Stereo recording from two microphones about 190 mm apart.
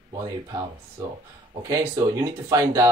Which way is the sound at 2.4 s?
15° right (ahead or behind).